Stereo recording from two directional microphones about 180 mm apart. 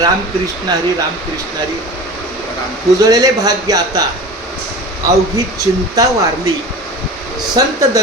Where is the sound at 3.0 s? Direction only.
20° right (ahead or behind).